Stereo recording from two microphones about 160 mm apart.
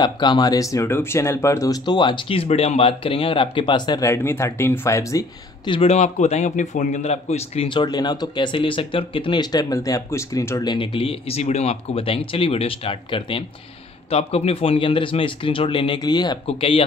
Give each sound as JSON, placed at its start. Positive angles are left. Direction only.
{"t": 0.0, "sound": "speech", "side_deg": 25}
{"t": 5.7, "sound": "a man's voice", "side_deg": 40}